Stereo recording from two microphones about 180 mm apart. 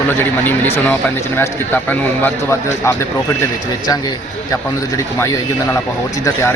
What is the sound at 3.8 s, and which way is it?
Speech, 20° left (ahead or behind).